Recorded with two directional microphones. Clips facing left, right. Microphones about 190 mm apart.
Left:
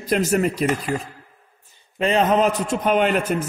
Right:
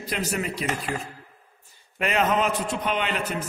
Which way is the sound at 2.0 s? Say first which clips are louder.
Left 5 dB; 30° left (ahead or behind).